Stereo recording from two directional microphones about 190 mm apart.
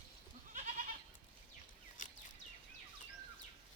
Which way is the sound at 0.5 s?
40° right (ahead or behind).